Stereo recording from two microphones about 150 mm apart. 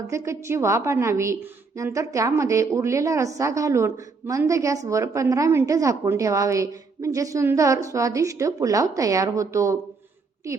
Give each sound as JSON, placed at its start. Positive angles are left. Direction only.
{"t": 0.1, "sound": "a woman's voice", "side_deg": -20}